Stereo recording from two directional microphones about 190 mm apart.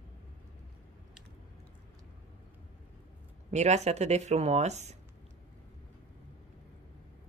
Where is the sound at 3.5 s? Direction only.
35° right (ahead or behind).